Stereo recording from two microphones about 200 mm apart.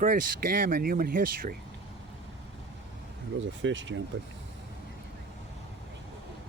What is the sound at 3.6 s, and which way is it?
Speech, 70° right (ahead or behind).